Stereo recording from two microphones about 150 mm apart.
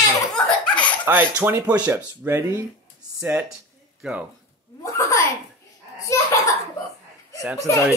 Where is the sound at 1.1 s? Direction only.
15° right (ahead or behind).